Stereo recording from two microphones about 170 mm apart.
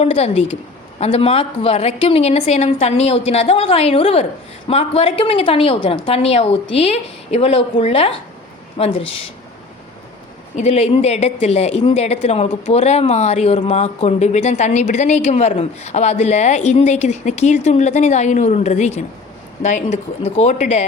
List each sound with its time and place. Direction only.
0.0 s a woman's voice: 35° left (ahead or behind)
10.5 s a woman's voice: 40° left (ahead or behind)